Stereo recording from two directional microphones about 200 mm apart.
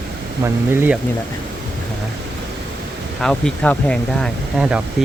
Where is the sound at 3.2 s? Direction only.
5° left (ahead or behind).